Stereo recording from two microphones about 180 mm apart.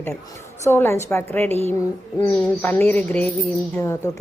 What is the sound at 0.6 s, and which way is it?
A woman's voice, 15° left (ahead or behind).